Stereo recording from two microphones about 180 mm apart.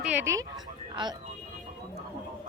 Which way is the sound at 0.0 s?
10° right (ahead or behind).